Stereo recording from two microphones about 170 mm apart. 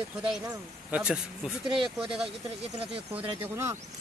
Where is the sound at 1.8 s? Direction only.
30° right (ahead or behind).